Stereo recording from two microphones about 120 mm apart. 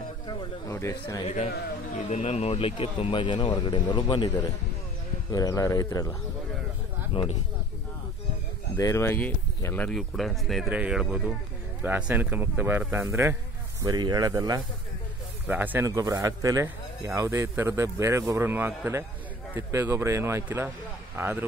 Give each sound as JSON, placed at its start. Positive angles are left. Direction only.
{"t": 0.7, "sound": "speech", "side_deg": 25}
{"t": 1.2, "sound": "speech", "side_deg": 60}
{"t": 8.7, "sound": "speech", "side_deg": 25}
{"t": 9.8, "sound": "speech", "side_deg": 0}
{"t": 13.8, "sound": "speech", "side_deg": -35}
{"t": 15.4, "sound": "speech", "side_deg": -15}
{"t": 15.8, "sound": "speech", "side_deg": -30}